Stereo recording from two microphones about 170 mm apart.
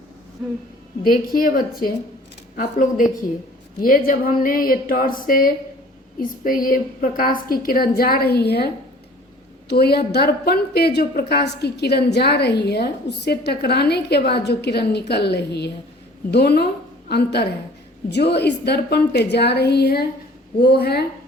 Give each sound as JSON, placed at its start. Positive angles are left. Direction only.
{"t": 1.0, "sound": "a woman's voice", "side_deg": 55}